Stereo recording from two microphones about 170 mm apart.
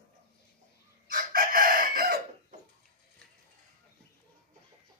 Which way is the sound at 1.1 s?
55° right (ahead or behind).